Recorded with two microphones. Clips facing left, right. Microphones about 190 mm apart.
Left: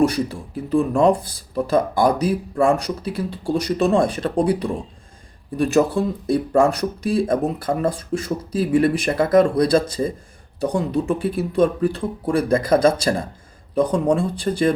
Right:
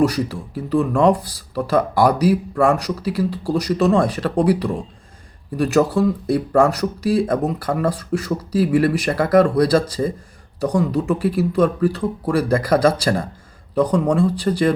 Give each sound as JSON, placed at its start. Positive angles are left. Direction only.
{"t": 0.0, "sound": "speech", "side_deg": 25}
{"t": 5.5, "sound": "speech", "side_deg": 25}